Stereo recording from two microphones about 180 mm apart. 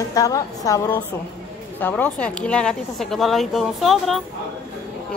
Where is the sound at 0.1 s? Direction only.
20° left (ahead or behind).